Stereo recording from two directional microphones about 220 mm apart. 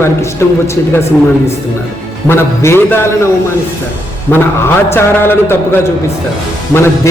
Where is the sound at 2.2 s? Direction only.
10° left (ahead or behind).